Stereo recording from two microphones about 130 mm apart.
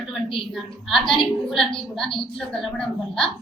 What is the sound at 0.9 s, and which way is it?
A woman's voice, centre (ahead or behind).